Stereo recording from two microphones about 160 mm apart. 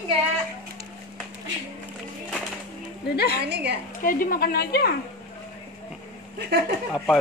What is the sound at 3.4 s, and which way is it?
Speech, 90° right.